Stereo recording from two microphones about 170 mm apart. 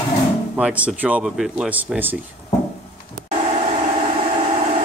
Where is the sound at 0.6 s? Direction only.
5° right (ahead or behind).